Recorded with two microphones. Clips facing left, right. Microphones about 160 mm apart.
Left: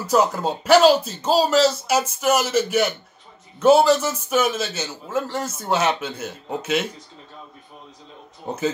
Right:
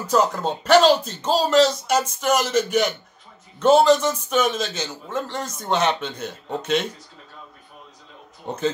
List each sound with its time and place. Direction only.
0.0 s a man's voice: 10° left (ahead or behind)
8.5 s speech: 5° left (ahead or behind)